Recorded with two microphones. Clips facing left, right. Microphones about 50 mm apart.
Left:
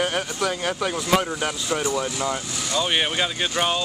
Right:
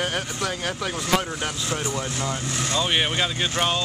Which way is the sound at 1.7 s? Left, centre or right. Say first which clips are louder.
Left 4 dB; left.